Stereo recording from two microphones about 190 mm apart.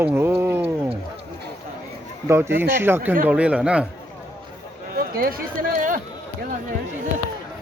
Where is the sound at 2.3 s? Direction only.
15° right (ahead or behind).